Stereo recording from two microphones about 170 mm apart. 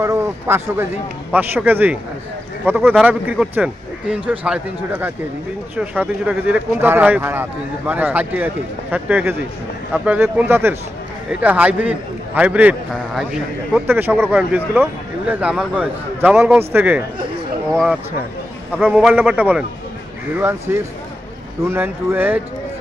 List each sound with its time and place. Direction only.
0.0 s a man's voice: 15° right (ahead or behind)
18.7 s a man's voice: 10° right (ahead or behind)